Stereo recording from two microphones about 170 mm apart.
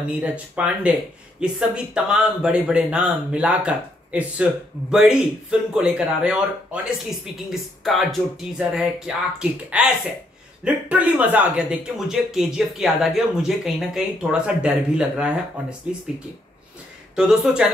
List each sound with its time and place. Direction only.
0.2 s speech: 5° right (ahead or behind)
17.1 s speech: 5° right (ahead or behind)